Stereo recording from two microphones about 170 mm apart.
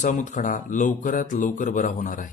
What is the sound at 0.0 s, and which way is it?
Speech, 45° left (ahead or behind).